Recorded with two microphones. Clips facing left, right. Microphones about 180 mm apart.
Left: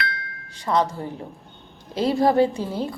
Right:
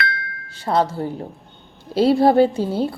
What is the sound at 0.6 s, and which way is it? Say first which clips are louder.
Speech: right 2 dB; 30° right (ahead or behind).